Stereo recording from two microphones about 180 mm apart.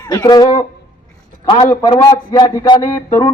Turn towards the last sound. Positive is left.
turn(degrees=25)  # may be behind; listen again after turning